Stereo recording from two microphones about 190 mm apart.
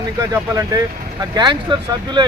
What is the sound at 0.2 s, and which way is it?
Speech, 20° right (ahead or behind).